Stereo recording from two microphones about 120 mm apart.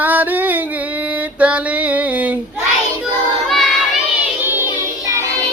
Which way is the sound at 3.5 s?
Centre (ahead or behind).